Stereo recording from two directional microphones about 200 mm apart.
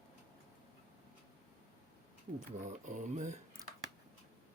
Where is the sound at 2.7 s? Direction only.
40° right (ahead or behind).